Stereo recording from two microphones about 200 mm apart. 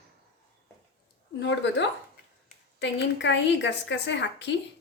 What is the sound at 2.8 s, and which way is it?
A woman's voice, 65° left (ahead or behind).